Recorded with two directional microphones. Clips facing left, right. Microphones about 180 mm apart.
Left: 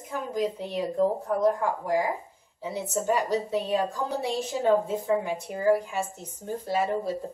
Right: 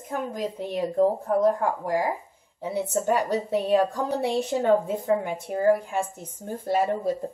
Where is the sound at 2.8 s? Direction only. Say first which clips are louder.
Right 2 dB; 60° right (ahead or behind).